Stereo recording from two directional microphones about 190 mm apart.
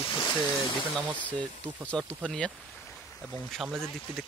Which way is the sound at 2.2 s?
5° left (ahead or behind).